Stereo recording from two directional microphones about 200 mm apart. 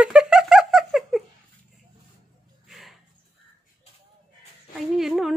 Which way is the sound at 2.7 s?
Centre (ahead or behind).